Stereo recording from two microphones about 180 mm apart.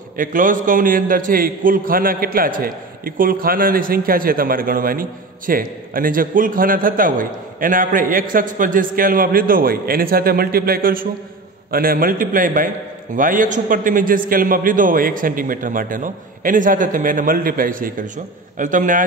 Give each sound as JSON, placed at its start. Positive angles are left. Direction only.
{"t": 0.2, "sound": "a man's voice", "side_deg": -50}